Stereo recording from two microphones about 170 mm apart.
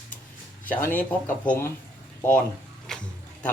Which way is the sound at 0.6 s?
10° left (ahead or behind).